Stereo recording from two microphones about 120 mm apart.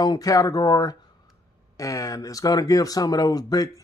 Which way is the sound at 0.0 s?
30° left (ahead or behind).